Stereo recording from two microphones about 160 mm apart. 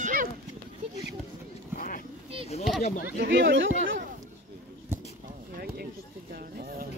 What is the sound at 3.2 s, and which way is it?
Speech, 90° right.